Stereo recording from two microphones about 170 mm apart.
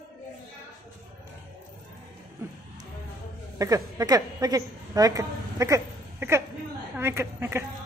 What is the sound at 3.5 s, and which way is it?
A woman's voice, 20° right (ahead or behind).